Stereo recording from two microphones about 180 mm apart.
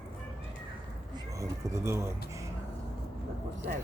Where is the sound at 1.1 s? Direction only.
15° right (ahead or behind).